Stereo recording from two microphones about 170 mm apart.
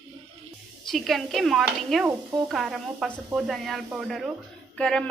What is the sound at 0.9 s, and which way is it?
A woman's voice, centre (ahead or behind).